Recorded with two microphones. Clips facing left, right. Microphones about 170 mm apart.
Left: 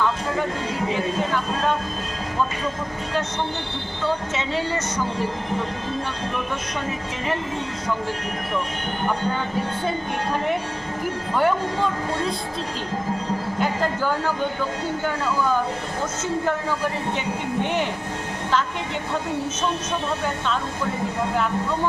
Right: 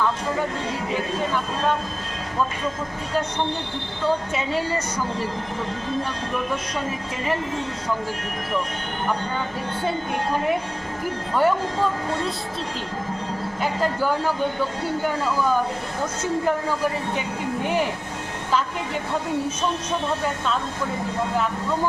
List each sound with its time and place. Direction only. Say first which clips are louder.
11.3 s speech: right 1 dB; 5° right (ahead or behind)
17.6 s speech: right 1 dB; 5° right (ahead or behind)